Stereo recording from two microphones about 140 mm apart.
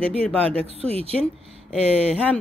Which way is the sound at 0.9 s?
45° right (ahead or behind).